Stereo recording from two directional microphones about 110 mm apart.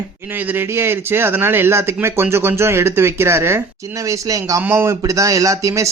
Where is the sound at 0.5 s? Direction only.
20° right (ahead or behind).